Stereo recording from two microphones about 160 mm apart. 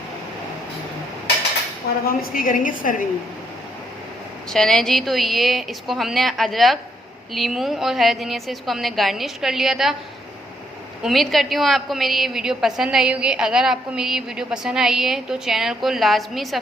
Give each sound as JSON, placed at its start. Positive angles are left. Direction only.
{"t": 2.0, "sound": "a woman's voice", "side_deg": 65}
{"t": 4.5, "sound": "a woman's voice", "side_deg": 5}
{"t": 11.0, "sound": "a woman's voice", "side_deg": 0}